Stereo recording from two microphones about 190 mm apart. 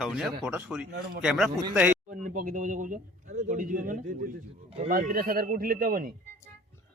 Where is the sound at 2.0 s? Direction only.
45° right (ahead or behind).